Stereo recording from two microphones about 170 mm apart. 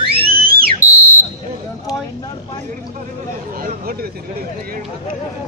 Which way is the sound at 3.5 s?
55° right (ahead or behind).